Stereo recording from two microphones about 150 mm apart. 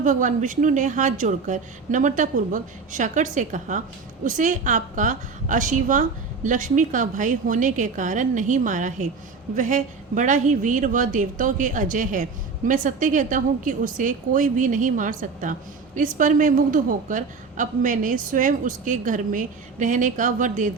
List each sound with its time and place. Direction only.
0.0 s a woman's voice: 60° right (ahead or behind)